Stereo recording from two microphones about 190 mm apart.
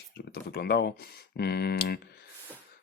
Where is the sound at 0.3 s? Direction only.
55° left (ahead or behind).